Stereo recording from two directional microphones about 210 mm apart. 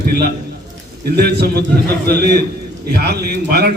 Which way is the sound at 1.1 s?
50° right (ahead or behind).